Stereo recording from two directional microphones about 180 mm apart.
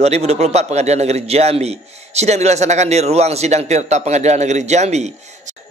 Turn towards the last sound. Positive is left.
turn(degrees=-40)  # may be behind; listen again after turning